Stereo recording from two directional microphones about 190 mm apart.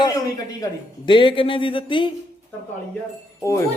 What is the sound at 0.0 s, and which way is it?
A man's voice, 20° left (ahead or behind).